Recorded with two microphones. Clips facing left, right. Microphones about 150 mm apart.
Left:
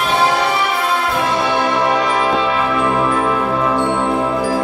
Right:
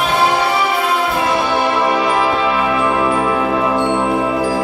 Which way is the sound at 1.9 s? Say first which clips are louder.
Right 1 dB; 5° right (ahead or behind).